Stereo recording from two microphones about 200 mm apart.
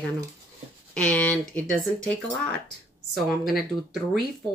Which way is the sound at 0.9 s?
5° left (ahead or behind).